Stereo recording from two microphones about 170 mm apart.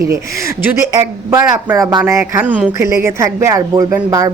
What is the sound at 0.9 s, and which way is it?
Speech, 20° right (ahead or behind).